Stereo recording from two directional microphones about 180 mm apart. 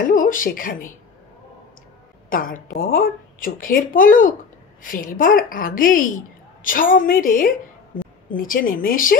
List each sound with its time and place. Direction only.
0.0 s speech: 50° left (ahead or behind)
2.2 s a woman's voice: 50° left (ahead or behind)